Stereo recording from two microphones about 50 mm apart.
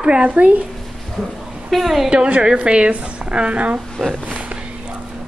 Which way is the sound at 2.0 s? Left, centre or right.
Right.